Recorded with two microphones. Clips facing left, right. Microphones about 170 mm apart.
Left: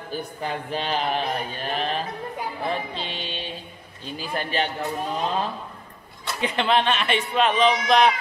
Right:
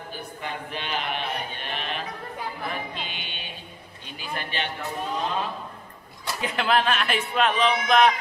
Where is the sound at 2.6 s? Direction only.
30° left (ahead or behind).